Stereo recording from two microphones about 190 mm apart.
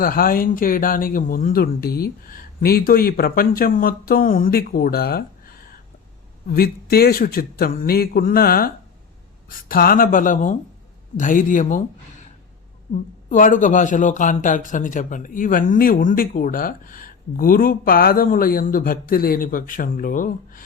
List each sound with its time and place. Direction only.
0.0 s speech: 50° left (ahead or behind)
12.9 s speech: 45° left (ahead or behind)